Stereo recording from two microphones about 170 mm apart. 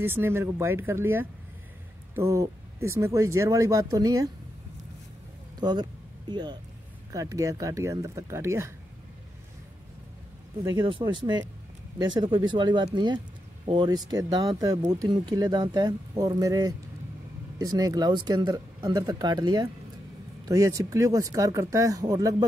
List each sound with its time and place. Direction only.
0.0 s speech: 15° right (ahead or behind)
5.6 s speech: 25° right (ahead or behind)
10.6 s speech: 30° right (ahead or behind)